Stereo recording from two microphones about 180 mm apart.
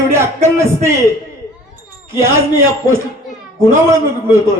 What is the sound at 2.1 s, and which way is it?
A man's voice, 15° right (ahead or behind).